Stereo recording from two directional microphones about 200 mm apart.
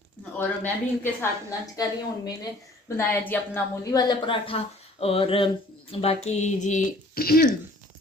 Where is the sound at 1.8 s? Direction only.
20° left (ahead or behind); by 7.5 s 50° left (ahead or behind).